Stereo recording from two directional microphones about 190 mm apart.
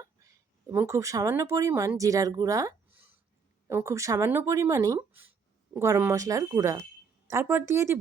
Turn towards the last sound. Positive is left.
turn(degrees=-15)  # may be behind; listen again after turning